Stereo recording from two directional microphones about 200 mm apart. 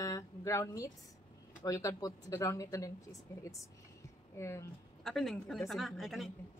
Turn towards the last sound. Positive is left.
turn(degrees=0)  # may be behind; listen again after turning